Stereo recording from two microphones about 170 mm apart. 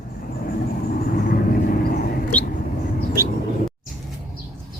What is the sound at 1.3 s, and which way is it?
Vehicle, 60° left (ahead or behind).